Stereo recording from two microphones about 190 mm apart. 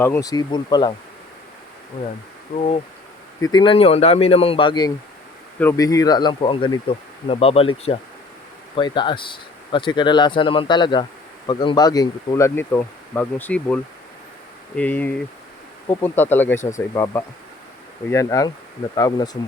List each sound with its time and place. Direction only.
0.0 s speech: 15° left (ahead or behind)
2.6 s speech: 35° left (ahead or behind); by 13.7 s 10° left (ahead or behind)
14.8 s speech: 10° left (ahead or behind)